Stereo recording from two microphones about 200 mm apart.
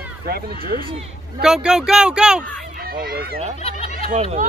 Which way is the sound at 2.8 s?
50° right (ahead or behind).